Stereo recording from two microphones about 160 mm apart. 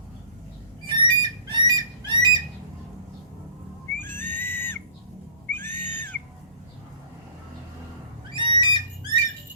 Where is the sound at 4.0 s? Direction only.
15° left (ahead or behind).